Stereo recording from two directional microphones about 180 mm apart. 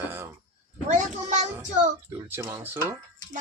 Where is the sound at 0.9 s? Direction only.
40° right (ahead or behind).